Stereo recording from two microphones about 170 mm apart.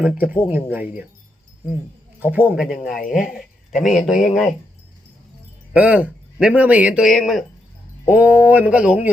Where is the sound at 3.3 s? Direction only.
Centre (ahead or behind).